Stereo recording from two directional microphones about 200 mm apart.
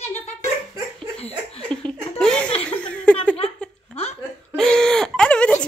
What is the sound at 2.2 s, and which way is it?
Laughter, 5° left (ahead or behind).